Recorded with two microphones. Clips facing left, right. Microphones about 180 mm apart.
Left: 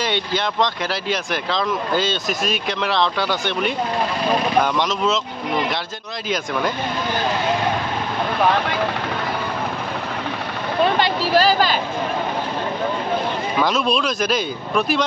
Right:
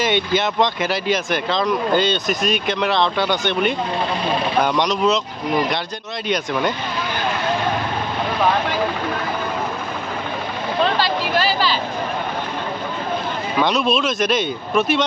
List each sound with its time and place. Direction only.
0.4 s speech: 5° right (ahead or behind)
4.7 s speech: centre (ahead or behind)
6.2 s speech: centre (ahead or behind)
11.2 s speech: 40° left (ahead or behind)
13.6 s speech: centre (ahead or behind)